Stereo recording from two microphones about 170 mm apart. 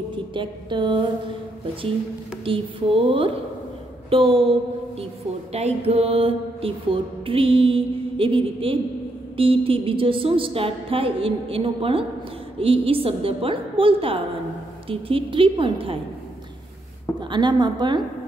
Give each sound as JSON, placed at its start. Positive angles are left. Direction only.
{"t": 0.1, "sound": "a woman's voice", "side_deg": -30}
{"t": 2.4, "sound": "mantra", "side_deg": -30}
{"t": 5.5, "sound": "mantra", "side_deg": -40}
{"t": 17.2, "sound": "a woman's voice", "side_deg": -25}